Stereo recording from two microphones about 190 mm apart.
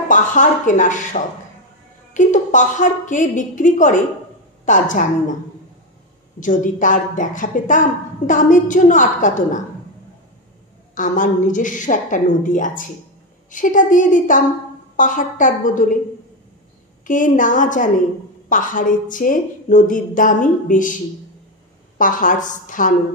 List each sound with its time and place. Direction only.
0.1 s a woman's voice: 40° left (ahead or behind)
6.4 s a woman's voice: 40° left (ahead or behind)
11.0 s a woman's voice: 45° left (ahead or behind)
17.0 s a woman's voice: 45° left (ahead or behind)